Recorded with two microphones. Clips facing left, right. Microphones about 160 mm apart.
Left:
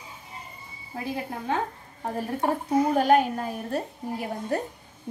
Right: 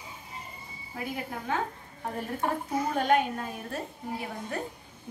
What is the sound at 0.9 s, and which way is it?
Speech, 30° left (ahead or behind).